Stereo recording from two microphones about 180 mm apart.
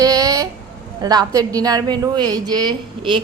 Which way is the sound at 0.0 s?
20° right (ahead or behind).